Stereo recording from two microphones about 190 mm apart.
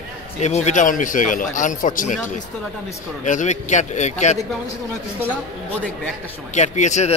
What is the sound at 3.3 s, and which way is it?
A man's voice, 40° left (ahead or behind).